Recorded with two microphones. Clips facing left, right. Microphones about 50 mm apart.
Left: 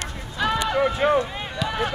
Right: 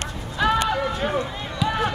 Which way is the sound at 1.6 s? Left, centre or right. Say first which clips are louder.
Right 2 dB; centre.